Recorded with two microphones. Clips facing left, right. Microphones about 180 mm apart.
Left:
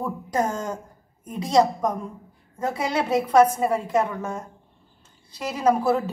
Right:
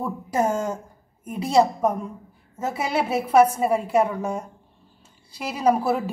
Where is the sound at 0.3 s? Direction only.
5° right (ahead or behind).